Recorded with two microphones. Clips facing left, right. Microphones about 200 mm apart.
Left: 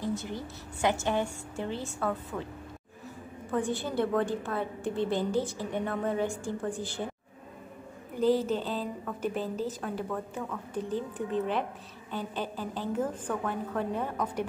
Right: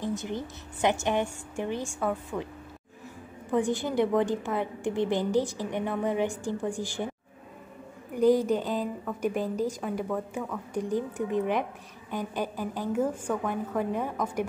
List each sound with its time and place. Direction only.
0.0 s a woman's voice: 20° right (ahead or behind)
3.5 s a woman's voice: 15° right (ahead or behind)
8.2 s a woman's voice: 15° right (ahead or behind)